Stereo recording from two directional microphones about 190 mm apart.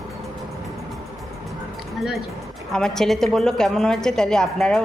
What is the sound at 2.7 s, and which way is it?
A woman's voice, 5° left (ahead or behind).